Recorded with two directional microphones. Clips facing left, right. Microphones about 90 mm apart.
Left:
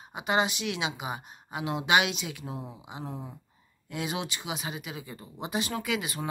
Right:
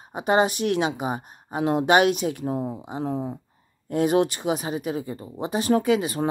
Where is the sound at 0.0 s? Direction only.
40° right (ahead or behind).